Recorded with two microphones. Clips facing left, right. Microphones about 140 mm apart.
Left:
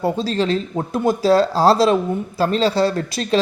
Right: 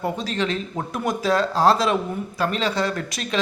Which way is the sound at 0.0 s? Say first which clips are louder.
Left 5 dB; 30° left (ahead or behind).